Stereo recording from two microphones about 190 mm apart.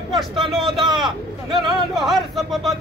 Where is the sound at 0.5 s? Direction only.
Centre (ahead or behind).